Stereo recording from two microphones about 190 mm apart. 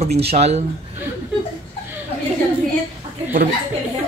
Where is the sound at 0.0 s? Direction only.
35° right (ahead or behind).